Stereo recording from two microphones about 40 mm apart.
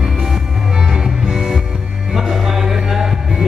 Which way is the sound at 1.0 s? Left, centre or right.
Centre.